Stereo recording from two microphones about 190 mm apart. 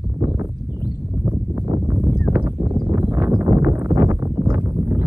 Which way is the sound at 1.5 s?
15° right (ahead or behind).